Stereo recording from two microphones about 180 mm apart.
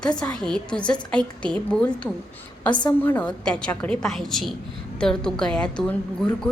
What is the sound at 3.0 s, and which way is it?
A woman's voice, 10° left (ahead or behind).